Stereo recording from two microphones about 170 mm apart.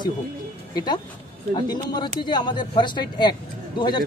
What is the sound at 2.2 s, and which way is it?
Speech, 25° left (ahead or behind).